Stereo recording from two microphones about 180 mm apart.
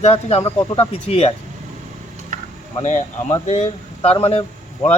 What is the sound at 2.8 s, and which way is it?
Speech, 40° left (ahead or behind).